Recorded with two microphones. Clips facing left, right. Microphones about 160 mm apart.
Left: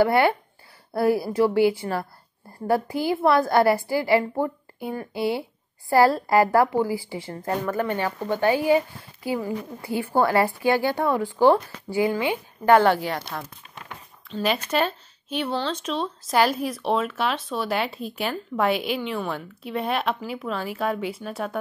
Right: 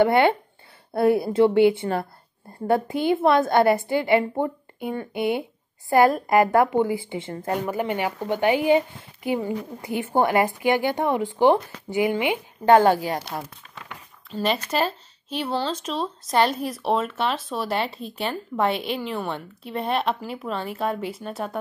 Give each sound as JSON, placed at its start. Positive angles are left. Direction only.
{"t": 0.0, "sound": "speech", "side_deg": -25}
{"t": 12.8, "sound": "speech", "side_deg": -40}
{"t": 13.1, "sound": "speech", "side_deg": -15}
{"t": 14.4, "sound": "speech", "side_deg": 0}